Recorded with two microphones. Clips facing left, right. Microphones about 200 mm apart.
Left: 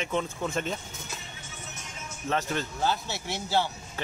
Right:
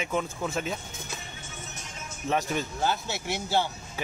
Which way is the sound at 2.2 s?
15° right (ahead or behind).